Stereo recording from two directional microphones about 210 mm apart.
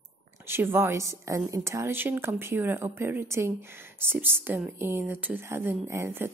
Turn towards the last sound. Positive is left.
turn(degrees=-10)  # may be behind; listen again after turning